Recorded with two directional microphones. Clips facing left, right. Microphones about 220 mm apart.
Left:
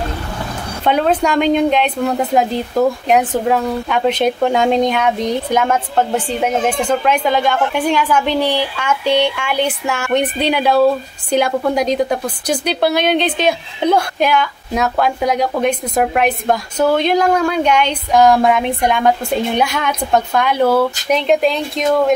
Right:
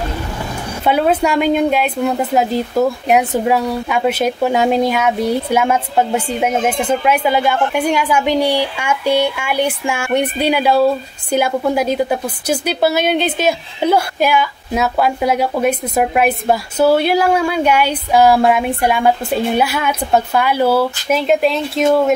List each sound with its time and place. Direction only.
0.8 s a woman's voice: 5° right (ahead or behind)